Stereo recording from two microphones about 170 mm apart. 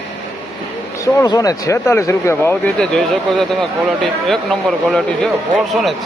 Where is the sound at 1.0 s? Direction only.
20° left (ahead or behind).